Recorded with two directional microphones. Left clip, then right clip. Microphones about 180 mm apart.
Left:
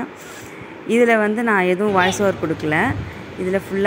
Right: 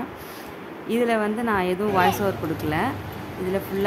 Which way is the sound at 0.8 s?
20° left (ahead or behind).